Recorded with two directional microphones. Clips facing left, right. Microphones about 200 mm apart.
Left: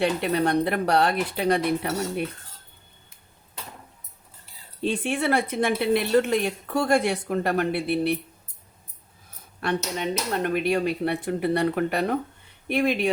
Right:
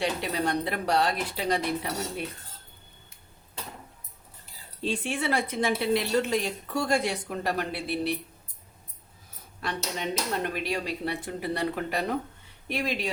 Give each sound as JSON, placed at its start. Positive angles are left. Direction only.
{"t": 0.0, "sound": "speech", "side_deg": 55}
{"t": 4.8, "sound": "speech", "side_deg": 55}
{"t": 9.6, "sound": "speech", "side_deg": 55}